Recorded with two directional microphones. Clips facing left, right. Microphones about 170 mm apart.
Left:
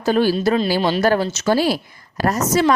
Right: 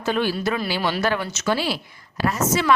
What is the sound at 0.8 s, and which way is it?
Speech, 20° left (ahead or behind).